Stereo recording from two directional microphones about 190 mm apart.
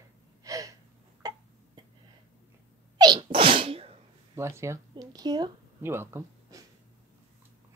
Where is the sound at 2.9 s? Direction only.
20° right (ahead or behind).